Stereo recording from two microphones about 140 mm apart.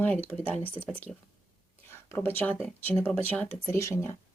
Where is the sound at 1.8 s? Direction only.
15° left (ahead or behind).